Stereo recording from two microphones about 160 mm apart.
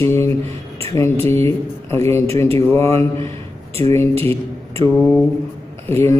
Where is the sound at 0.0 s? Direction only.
15° left (ahead or behind).